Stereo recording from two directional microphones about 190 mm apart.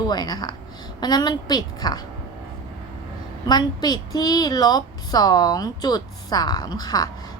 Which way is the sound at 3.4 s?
20° left (ahead or behind).